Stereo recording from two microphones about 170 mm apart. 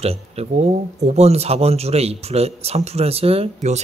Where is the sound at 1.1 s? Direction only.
40° right (ahead or behind).